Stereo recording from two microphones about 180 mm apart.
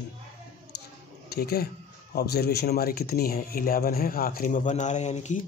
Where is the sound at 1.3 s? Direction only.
60° left (ahead or behind); by 5.4 s 40° left (ahead or behind).